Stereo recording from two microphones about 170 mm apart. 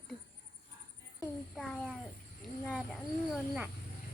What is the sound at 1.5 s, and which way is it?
Speech, centre (ahead or behind).